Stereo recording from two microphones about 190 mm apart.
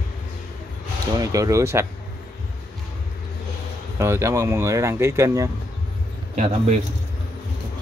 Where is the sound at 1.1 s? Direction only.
15° right (ahead or behind).